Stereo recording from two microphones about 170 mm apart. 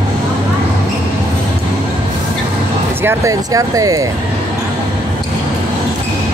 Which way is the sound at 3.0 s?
20° right (ahead or behind).